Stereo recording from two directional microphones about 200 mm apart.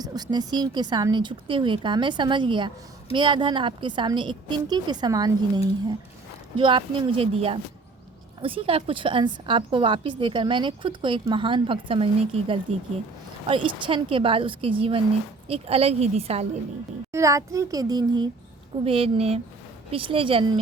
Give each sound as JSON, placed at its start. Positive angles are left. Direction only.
{"t": 0.0, "sound": "a woman's voice", "side_deg": -20}
{"t": 17.1, "sound": "a child's voice", "side_deg": -15}